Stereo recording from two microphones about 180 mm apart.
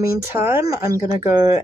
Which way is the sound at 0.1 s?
15° right (ahead or behind).